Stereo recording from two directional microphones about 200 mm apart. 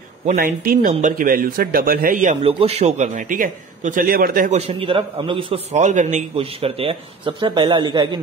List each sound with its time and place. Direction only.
0.3 s a man's voice: 40° right (ahead or behind)
4.6 s a man's voice: 30° right (ahead or behind)